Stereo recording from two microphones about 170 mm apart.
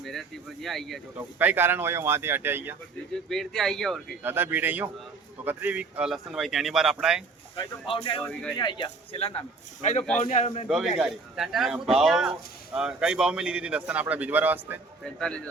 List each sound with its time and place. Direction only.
0.0 s speech: centre (ahead or behind)
1.4 s a man's voice: 10° right (ahead or behind)
3.2 s speech: 5° left (ahead or behind)
4.2 s a man's voice: 10° right (ahead or behind)
7.5 s speech: 30° left (ahead or behind)
8.3 s speech: 5° left (ahead or behind)
8.5 s speech: 25° left (ahead or behind)
9.1 s speech: 35° left (ahead or behind)
10.2 s a man's voice: 45° left (ahead or behind)
10.7 s a man's voice: 5° right (ahead or behind)
15.0 s speech: 5° left (ahead or behind)